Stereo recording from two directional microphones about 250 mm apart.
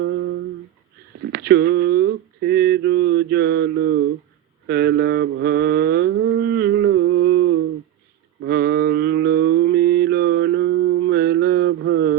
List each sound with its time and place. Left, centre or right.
0.0 s humming: right
1.3 s mantra: right